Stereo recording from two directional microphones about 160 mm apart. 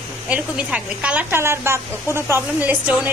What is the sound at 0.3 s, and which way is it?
A woman's voice, 10° right (ahead or behind).